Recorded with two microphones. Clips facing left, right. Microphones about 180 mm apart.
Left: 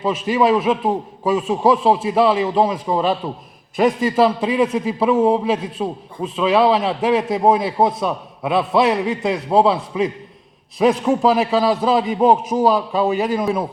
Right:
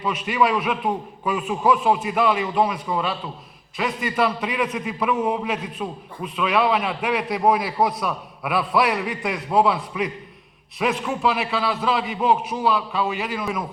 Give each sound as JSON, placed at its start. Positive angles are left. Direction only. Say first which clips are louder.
{"t": 0.0, "sound": "a man's voice", "louder": "left 5 dB", "side_deg": 25}